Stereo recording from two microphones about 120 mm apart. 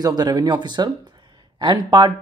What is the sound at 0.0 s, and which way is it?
Speech, 35° right (ahead or behind).